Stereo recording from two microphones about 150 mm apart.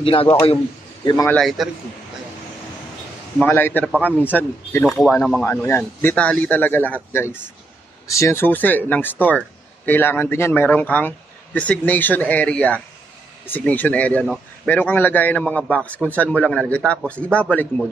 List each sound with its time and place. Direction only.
0.0 s a man's voice: 40° left (ahead or behind)
1.4 s speech: centre (ahead or behind)
3.3 s a man's voice: 15° left (ahead or behind)
4.8 s speech: centre (ahead or behind)
5.4 s a man's voice: 15° left (ahead or behind)